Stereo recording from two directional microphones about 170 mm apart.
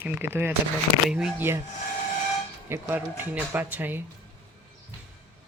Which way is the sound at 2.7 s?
15° right (ahead or behind).